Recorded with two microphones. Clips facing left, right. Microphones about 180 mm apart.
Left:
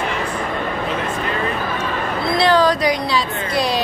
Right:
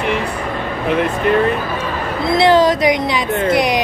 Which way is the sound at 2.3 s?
20° right (ahead or behind).